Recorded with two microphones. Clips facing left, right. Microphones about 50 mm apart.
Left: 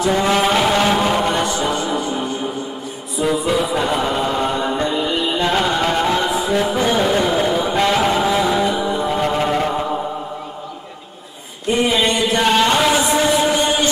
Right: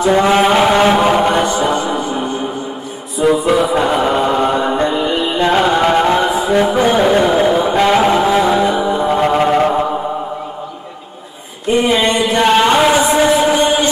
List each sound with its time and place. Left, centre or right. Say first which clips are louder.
0.3 s chant: right 5 dB; centre
3.3 s music: right 6 dB; right
11.6 s a sound: right 4 dB; centre
13.0 s music: right 4 dB; centre